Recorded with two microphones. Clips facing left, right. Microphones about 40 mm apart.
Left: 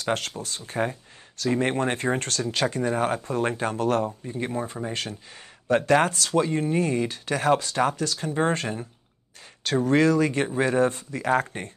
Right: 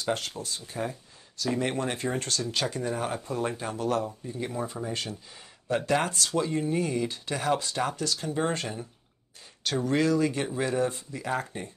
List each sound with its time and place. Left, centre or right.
0.0 s speech: left
4.3 s speech: left